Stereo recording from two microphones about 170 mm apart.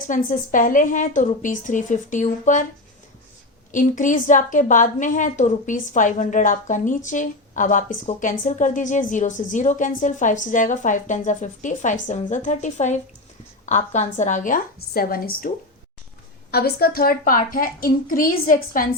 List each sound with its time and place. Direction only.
0.1 s a woman's voice: 50° left (ahead or behind)
3.7 s a woman's voice: 50° left (ahead or behind)
16.5 s a child's voice: 65° left (ahead or behind)